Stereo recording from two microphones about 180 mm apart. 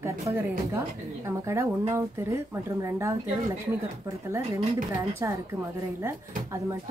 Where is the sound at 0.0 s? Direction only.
15° right (ahead or behind).